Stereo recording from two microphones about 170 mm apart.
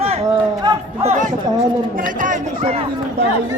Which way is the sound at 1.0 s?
50° right (ahead or behind).